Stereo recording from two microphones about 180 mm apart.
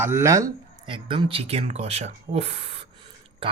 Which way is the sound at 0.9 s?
30° right (ahead or behind).